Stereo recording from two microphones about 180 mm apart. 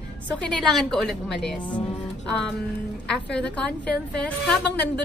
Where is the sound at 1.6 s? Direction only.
25° left (ahead or behind).